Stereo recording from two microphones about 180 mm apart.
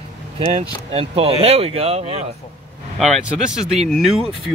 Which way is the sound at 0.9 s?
30° right (ahead or behind).